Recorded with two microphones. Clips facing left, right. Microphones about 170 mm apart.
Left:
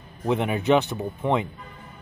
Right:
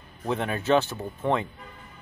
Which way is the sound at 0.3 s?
15° left (ahead or behind).